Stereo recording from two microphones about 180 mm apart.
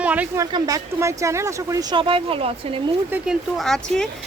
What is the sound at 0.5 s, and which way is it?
Speech, 20° right (ahead or behind).